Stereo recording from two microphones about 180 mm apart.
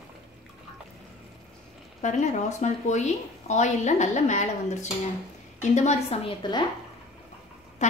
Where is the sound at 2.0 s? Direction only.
40° left (ahead or behind).